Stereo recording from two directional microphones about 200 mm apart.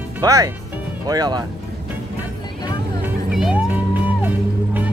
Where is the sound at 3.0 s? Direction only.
5° right (ahead or behind).